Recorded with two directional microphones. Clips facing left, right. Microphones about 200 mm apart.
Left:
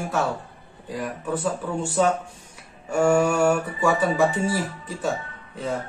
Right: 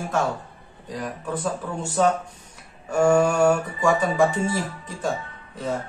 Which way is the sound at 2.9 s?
10° left (ahead or behind).